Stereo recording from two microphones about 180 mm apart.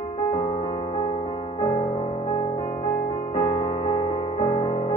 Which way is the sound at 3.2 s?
35° left (ahead or behind).